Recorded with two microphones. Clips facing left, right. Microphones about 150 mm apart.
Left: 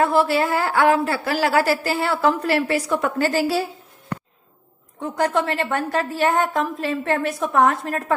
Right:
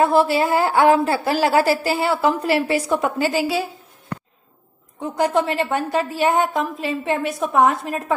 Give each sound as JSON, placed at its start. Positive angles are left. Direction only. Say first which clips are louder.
{"t": 0.0, "sound": "a woman's voice", "louder": "right 2 dB", "side_deg": -20}
{"t": 3.2, "sound": "a woman's voice", "louder": "even", "side_deg": -5}
{"t": 5.0, "sound": "a woman's voice", "louder": "right 2 dB", "side_deg": -10}